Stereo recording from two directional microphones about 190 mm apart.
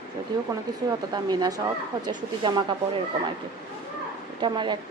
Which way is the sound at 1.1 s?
20° right (ahead or behind).